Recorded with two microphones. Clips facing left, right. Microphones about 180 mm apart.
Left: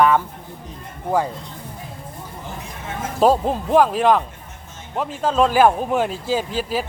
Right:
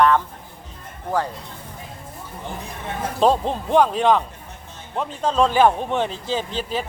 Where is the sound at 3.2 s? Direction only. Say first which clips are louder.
Left 2 dB; 5° left (ahead or behind).